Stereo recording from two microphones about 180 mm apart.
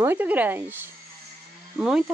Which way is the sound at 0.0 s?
10° right (ahead or behind).